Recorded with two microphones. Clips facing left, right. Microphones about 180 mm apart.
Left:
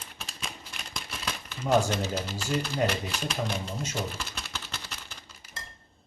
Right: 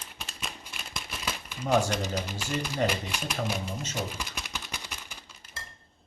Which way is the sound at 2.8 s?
10° right (ahead or behind).